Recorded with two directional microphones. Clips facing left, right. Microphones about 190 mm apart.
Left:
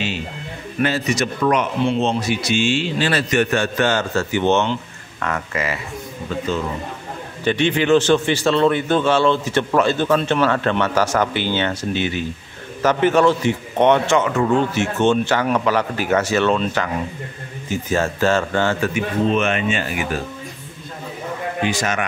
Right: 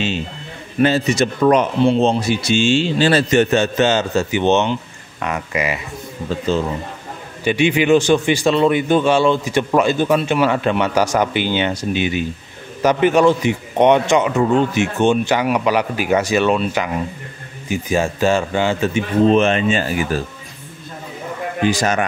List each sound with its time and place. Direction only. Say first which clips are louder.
0.7 s speech: right 5 dB; 30° right (ahead or behind)
6.2 s a man's voice: right 4 dB; 30° right (ahead or behind)
7.4 s speech: right 2 dB; 10° right (ahead or behind)
18.9 s a man's voice: right 8 dB; 35° right (ahead or behind)
21.6 s a man's voice: right 6 dB; 35° right (ahead or behind)